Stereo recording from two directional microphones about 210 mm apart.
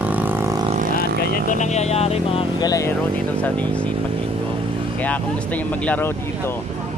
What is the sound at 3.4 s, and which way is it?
Speech, 5° left (ahead or behind).